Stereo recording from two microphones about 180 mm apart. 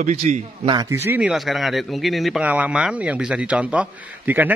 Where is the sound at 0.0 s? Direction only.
40° right (ahead or behind).